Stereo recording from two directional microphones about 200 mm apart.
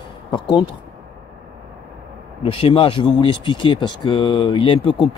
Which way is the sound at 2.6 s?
25° left (ahead or behind).